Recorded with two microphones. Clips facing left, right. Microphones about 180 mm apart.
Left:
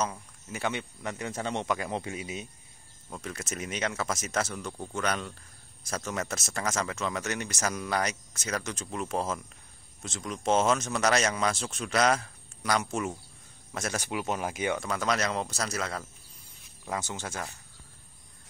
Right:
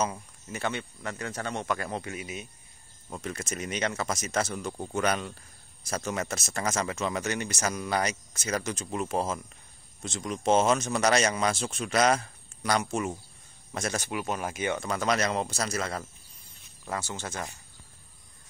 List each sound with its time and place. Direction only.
0.5 s speech: 10° left (ahead or behind)
3.2 s a man's voice: centre (ahead or behind)
4.7 s a man's voice: 10° right (ahead or behind)
14.0 s speech: 15° left (ahead or behind)
14.8 s a man's voice: centre (ahead or behind)
16.8 s speech: 10° left (ahead or behind)